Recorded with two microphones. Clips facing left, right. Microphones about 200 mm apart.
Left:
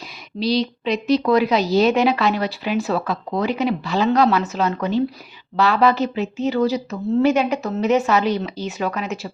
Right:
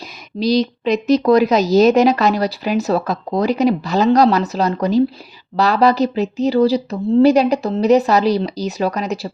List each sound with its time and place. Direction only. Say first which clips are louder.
0.3 s a woman's voice: right 4 dB; 45° right (ahead or behind)